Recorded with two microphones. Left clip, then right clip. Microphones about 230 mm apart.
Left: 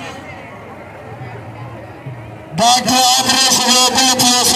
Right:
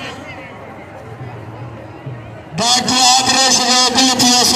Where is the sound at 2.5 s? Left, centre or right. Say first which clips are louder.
Left 3 dB; left.